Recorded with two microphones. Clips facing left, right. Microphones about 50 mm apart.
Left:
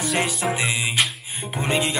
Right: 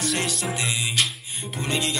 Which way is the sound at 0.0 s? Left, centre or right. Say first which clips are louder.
Left 3 dB; centre.